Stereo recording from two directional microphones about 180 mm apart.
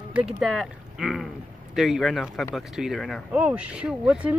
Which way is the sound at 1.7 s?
Centre (ahead or behind).